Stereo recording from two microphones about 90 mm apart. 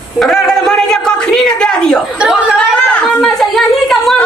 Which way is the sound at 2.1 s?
10° right (ahead or behind).